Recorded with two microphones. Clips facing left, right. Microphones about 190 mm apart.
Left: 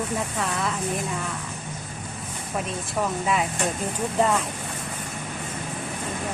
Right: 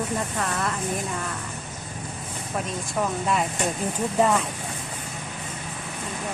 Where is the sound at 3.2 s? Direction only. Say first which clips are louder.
Even; centre (ahead or behind).